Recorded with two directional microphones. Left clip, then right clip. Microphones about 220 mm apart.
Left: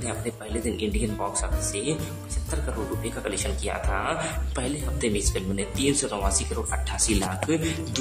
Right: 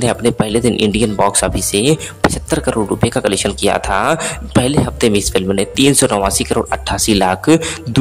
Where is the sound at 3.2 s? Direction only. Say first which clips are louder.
Right 15 dB; 45° right (ahead or behind).